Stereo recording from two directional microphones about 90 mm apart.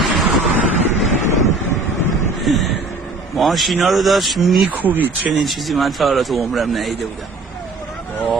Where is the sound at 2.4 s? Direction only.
Centre (ahead or behind).